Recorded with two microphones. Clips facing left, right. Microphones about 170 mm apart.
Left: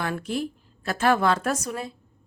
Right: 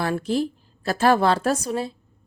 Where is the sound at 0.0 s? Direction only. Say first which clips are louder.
Right 5 dB; 35° right (ahead or behind).